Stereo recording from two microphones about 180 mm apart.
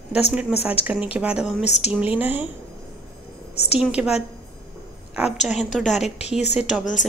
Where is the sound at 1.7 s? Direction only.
40° left (ahead or behind).